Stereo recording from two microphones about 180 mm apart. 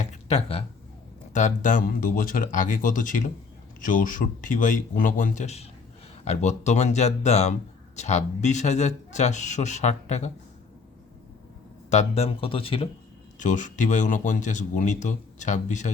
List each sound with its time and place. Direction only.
0.1 s a sound: 35° left (ahead or behind)
1.3 s speech: 40° left (ahead or behind)
11.9 s speech: 35° left (ahead or behind)
13.4 s speech: 45° left (ahead or behind)